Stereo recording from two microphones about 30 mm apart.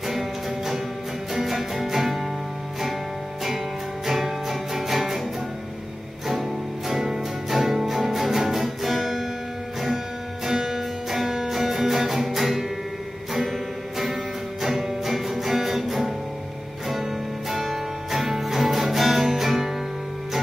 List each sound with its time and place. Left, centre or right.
0.0 s music: centre
3.4 s music: centre
6.2 s music: centre
10.4 s music: centre